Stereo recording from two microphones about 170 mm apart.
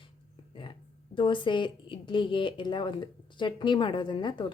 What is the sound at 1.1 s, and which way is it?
Speech, 30° left (ahead or behind).